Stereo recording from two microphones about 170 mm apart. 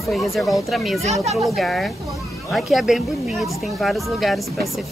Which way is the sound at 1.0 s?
40° right (ahead or behind).